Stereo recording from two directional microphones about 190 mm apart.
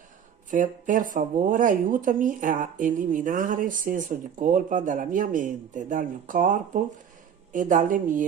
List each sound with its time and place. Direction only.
0.5 s speech: 45° right (ahead or behind)